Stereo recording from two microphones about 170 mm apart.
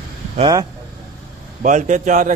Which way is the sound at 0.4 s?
20° right (ahead or behind).